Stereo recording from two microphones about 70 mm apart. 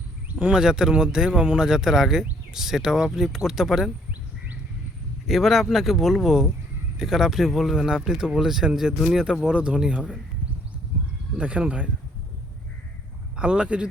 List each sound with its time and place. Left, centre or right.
0.3 s speech: centre
5.2 s speech: centre
11.3 s speech: centre
13.3 s speech: centre